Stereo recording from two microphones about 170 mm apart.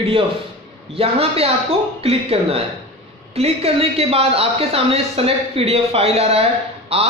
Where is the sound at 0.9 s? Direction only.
35° right (ahead or behind).